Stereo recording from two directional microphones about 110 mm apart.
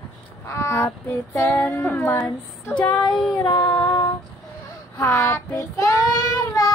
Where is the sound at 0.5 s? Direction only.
25° left (ahead or behind).